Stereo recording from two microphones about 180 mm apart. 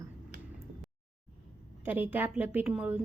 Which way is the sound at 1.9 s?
10° right (ahead or behind).